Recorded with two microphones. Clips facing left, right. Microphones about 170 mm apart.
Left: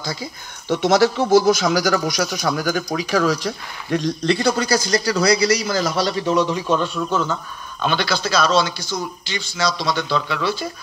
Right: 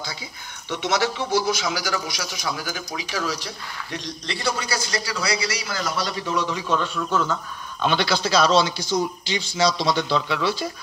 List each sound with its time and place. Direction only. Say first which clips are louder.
0.0 s speech: left 6 dB; 45° left (ahead or behind); by 7.2 s 20° left (ahead or behind)
7.8 s speech: left 1 dB; 25° right (ahead or behind)
9.8 s speech: even; 25° right (ahead or behind)